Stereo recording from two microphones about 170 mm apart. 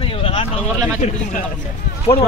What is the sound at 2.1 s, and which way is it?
Speech, 15° left (ahead or behind).